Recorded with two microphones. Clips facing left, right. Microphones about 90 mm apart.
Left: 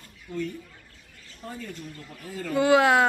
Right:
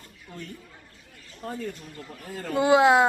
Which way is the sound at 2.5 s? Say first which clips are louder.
Right 1 dB; 20° right (ahead or behind).